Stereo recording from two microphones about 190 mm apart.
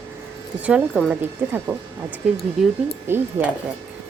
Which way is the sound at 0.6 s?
5° right (ahead or behind).